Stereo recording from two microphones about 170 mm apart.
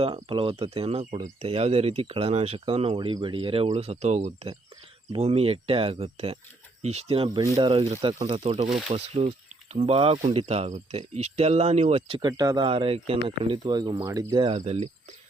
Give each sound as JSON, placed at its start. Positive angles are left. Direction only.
{"t": 0.0, "sound": "speech", "side_deg": -30}